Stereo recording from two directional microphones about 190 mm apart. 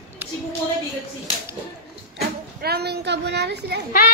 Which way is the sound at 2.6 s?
55° right (ahead or behind).